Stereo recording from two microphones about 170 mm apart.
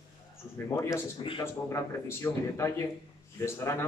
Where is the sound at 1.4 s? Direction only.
15° left (ahead or behind).